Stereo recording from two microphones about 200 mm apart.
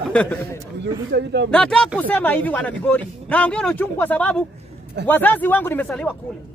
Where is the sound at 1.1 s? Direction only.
60° right (ahead or behind).